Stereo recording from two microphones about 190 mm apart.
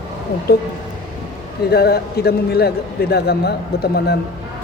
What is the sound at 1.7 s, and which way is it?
A man's voice, 55° left (ahead or behind).